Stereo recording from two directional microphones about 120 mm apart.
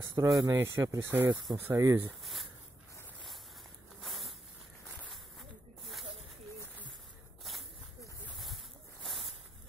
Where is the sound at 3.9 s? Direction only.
Centre (ahead or behind).